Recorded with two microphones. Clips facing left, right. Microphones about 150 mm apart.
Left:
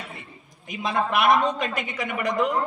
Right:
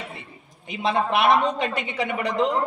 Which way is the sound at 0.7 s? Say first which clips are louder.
Right 2 dB; 30° right (ahead or behind).